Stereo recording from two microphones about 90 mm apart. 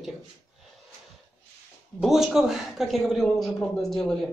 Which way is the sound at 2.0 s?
5° right (ahead or behind).